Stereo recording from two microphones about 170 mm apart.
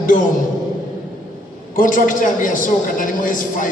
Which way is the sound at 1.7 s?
50° left (ahead or behind).